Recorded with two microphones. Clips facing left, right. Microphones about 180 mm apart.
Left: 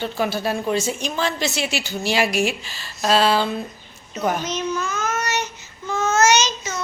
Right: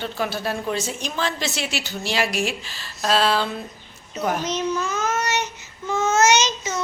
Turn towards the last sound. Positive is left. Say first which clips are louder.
# even
turn(degrees=-25)  # may be behind; listen again after turning